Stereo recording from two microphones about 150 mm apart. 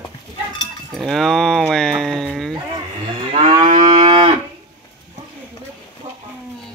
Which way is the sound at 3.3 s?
35° right (ahead or behind).